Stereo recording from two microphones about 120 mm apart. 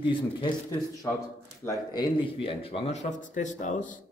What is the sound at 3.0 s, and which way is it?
Speech, 90° left.